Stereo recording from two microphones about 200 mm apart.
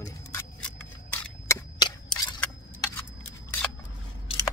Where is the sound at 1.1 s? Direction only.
15° left (ahead or behind).